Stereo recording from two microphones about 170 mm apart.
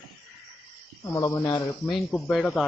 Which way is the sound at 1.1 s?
15° left (ahead or behind).